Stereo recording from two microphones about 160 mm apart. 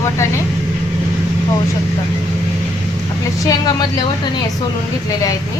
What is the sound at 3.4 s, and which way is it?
Speech, 20° left (ahead or behind).